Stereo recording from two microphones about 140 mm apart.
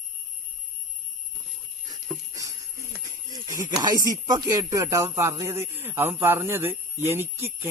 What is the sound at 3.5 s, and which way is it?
Speech, 25° right (ahead or behind).